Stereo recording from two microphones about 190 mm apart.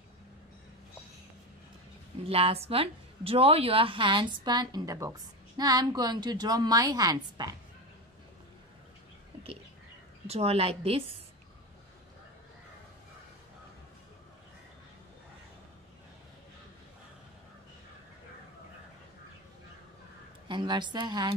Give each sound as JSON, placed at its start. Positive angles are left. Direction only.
{"t": 2.2, "sound": "a woman's voice", "side_deg": -30}
{"t": 10.2, "sound": "a woman's voice", "side_deg": -35}
{"t": 20.4, "sound": "a woman's voice", "side_deg": -25}